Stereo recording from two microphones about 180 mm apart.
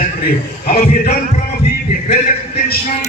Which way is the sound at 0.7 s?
55° left (ahead or behind).